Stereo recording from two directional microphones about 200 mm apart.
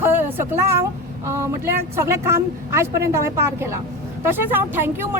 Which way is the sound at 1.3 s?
15° right (ahead or behind).